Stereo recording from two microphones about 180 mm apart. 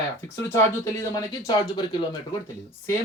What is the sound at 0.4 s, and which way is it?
Speech, 15° left (ahead or behind).